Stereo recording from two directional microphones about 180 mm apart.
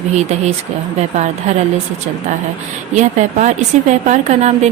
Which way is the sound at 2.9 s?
40° right (ahead or behind).